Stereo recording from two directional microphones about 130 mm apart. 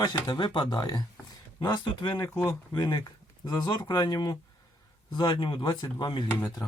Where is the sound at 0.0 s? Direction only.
30° left (ahead or behind).